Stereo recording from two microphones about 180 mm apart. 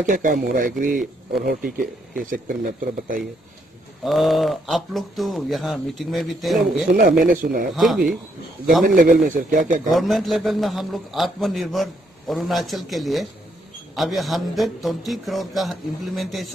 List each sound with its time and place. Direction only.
0.0 s speech: 45° right (ahead or behind)
4.0 s a man's voice: centre (ahead or behind)
6.9 s speech: 55° right (ahead or behind)
7.7 s a man's voice: centre (ahead or behind)
8.8 s speech: 50° right (ahead or behind)
9.8 s a man's voice: centre (ahead or behind)